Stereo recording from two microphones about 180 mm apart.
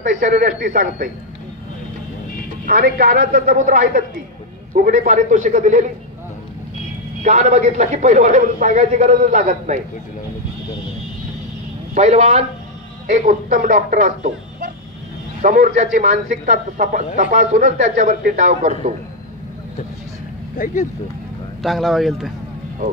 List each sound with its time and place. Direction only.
0.0 s a man's voice: 50° right (ahead or behind)
2.6 s a man's voice: 50° right (ahead or behind)
7.2 s a man's voice: 40° right (ahead or behind)
11.9 s a man's voice: 40° right (ahead or behind)
20.5 s speech: 50° left (ahead or behind)
21.6 s speech: centre (ahead or behind)